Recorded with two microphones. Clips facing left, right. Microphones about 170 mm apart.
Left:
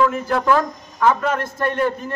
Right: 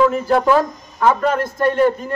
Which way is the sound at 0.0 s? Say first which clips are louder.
Right 4 dB; 30° right (ahead or behind).